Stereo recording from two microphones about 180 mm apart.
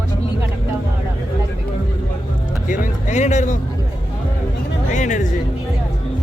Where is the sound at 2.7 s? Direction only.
40° left (ahead or behind).